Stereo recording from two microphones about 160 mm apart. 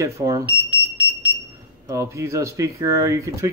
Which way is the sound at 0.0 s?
20° right (ahead or behind).